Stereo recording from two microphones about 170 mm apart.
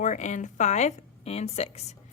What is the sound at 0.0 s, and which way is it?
A woman's voice, 45° left (ahead or behind).